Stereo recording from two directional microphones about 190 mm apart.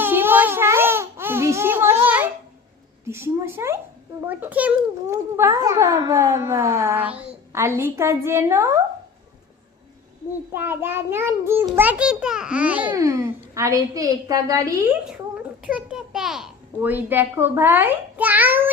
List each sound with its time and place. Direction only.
0.0 s a sound: 10° right (ahead or behind)
3.1 s a child's voice: 10° right (ahead or behind)
10.5 s a child's voice: 10° right (ahead or behind)
11.9 s a child's voice: 5° right (ahead or behind)
15.6 s a child's voice: 5° right (ahead or behind)